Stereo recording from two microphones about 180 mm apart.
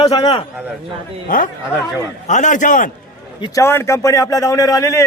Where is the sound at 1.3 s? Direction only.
50° left (ahead or behind).